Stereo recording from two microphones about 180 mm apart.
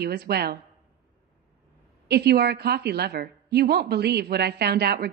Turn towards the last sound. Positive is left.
turn(degrees=-65)  # may be behind; listen again after turning